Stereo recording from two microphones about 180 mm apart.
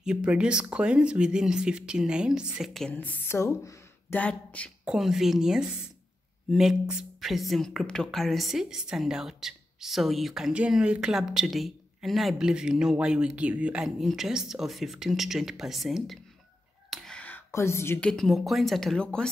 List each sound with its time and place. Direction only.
0.0 s speech: 5° right (ahead or behind)
4.8 s speech: centre (ahead or behind)
16.9 s whispering: 5° left (ahead or behind)
18.1 s speech: centre (ahead or behind)